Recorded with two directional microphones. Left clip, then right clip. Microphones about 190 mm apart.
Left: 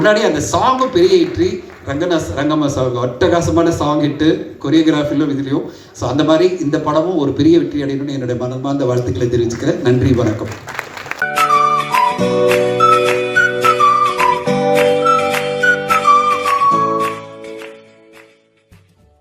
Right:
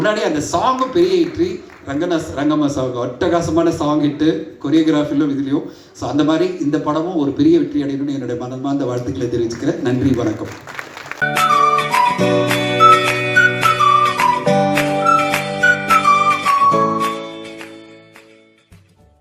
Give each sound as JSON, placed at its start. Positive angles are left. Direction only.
{"t": 0.0, "sound": "a man's voice", "side_deg": 25}
{"t": 11.1, "sound": "music", "side_deg": 55}
{"t": 11.4, "sound": "music", "side_deg": 0}